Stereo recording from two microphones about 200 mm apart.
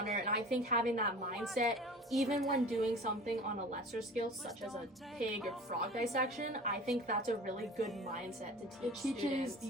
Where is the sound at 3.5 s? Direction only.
40° right (ahead or behind).